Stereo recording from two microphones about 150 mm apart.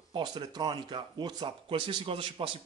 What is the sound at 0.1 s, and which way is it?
Speech, 30° right (ahead or behind).